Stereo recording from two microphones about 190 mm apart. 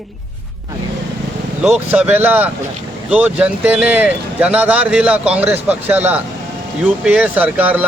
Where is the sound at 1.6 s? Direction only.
5° right (ahead or behind).